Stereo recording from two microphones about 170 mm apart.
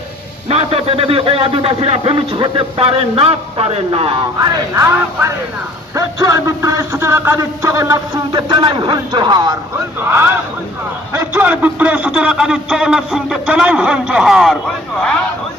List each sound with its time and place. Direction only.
0.4 s a man's voice: 35° right (ahead or behind)
4.4 s a man's voice: 20° right (ahead or behind)
10.0 s a man's voice: 15° right (ahead or behind)